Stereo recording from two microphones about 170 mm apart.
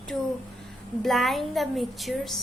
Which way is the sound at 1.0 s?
Centre (ahead or behind).